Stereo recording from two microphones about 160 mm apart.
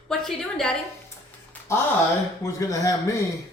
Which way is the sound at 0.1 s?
Centre (ahead or behind).